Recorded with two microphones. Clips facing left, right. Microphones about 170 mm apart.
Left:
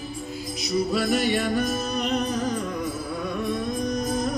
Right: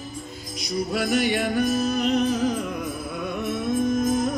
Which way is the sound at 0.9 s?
Centre (ahead or behind).